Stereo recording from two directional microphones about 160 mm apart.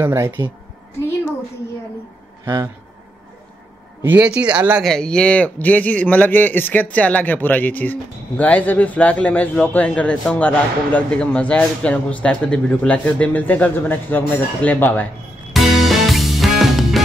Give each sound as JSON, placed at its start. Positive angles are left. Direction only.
{"t": 0.0, "sound": "speech", "side_deg": -15}
{"t": 2.4, "sound": "speech", "side_deg": -25}
{"t": 4.0, "sound": "speech", "side_deg": -10}
{"t": 4.8, "sound": "a man's voice", "side_deg": 5}
{"t": 15.5, "sound": "music", "side_deg": 0}